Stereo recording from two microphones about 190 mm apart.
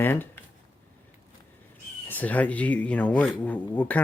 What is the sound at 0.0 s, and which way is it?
Speech, 10° left (ahead or behind).